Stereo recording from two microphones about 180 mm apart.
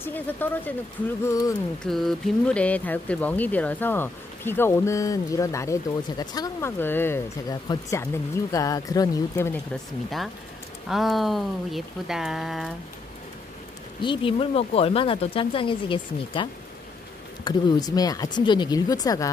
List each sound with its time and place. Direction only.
0.0 s speech: 10° left (ahead or behind)
1.8 s speech: centre (ahead or behind); by 9.6 s 15° left (ahead or behind)
10.9 s speech: centre (ahead or behind)
14.0 s speech: 30° left (ahead or behind)
17.5 s speech: 20° left (ahead or behind)